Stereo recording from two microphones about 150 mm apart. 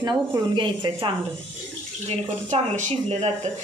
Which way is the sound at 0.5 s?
35° right (ahead or behind).